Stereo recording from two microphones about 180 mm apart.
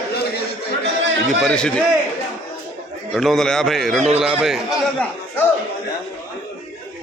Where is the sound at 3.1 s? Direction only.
Centre (ahead or behind).